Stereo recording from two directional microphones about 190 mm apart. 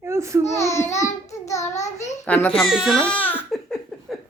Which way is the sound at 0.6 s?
15° left (ahead or behind).